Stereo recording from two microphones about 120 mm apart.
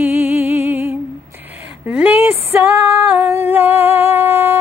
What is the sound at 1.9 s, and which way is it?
Female singing, 10° right (ahead or behind).